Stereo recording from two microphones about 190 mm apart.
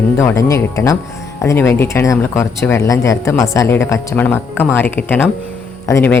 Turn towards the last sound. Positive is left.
turn(degrees=15)  # may be behind; listen again after turning